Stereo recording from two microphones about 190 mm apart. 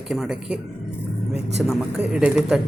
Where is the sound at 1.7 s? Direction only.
5° right (ahead or behind).